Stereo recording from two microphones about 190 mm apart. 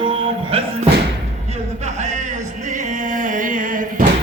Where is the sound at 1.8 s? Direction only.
40° right (ahead or behind).